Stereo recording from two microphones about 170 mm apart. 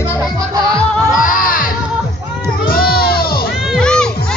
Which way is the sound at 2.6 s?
60° left (ahead or behind).